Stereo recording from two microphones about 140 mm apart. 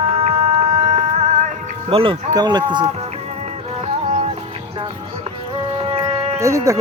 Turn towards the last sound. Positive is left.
turn(degrees=-20)  # may be behind; listen again after turning